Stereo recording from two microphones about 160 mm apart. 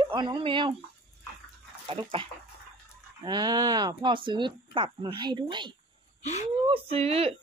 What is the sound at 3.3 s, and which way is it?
Speech, 25° right (ahead or behind).